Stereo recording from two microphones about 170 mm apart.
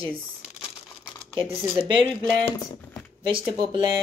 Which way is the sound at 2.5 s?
20° left (ahead or behind).